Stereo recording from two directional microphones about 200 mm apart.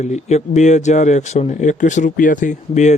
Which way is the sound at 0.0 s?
35° left (ahead or behind).